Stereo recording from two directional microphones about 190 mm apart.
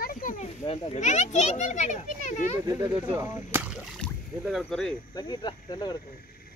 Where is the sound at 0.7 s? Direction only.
35° left (ahead or behind).